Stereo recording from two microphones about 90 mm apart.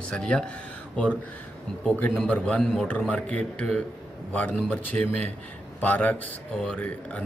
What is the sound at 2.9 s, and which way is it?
A man's voice, 15° left (ahead or behind).